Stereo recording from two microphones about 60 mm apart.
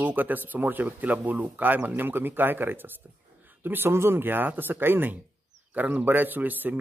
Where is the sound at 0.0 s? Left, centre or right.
Right.